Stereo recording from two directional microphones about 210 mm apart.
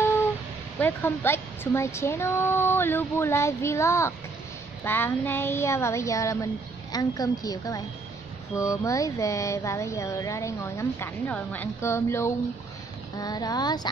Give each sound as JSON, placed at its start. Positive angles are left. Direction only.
{"t": 0.7, "sound": "speech", "side_deg": 10}